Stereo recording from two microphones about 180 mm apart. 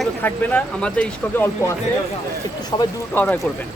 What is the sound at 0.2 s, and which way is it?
Speech, 10° left (ahead or behind).